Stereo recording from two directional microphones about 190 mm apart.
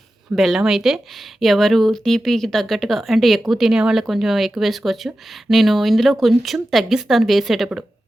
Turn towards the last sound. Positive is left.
turn(degrees=0)  # may be behind; listen again after turning